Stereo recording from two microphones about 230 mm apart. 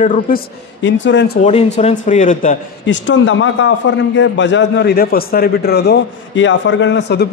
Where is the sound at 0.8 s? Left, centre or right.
Left.